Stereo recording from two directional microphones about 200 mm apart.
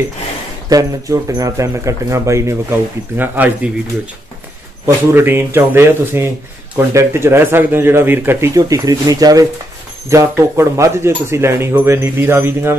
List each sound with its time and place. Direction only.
0.7 s speech: 15° right (ahead or behind)
4.8 s speech: 10° right (ahead or behind)